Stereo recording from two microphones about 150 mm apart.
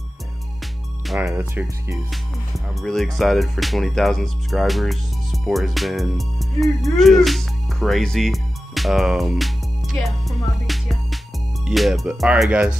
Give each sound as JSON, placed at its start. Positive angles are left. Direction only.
{"t": 1.2, "sound": "speech", "side_deg": -15}
{"t": 2.0, "sound": "speech", "side_deg": 0}